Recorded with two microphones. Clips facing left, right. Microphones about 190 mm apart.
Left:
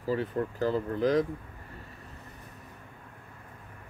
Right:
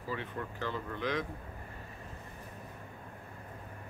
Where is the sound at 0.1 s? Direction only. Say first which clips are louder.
Left 9 dB; 40° left (ahead or behind).